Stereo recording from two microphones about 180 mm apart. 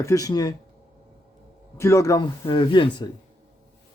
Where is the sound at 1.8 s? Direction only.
15° left (ahead or behind).